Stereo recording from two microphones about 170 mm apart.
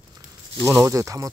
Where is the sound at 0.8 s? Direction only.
20° right (ahead or behind).